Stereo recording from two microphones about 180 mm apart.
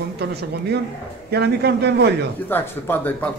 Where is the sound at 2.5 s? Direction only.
10° left (ahead or behind).